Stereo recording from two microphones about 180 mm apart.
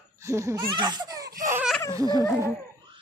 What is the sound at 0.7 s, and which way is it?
Baby laughter, 25° right (ahead or behind).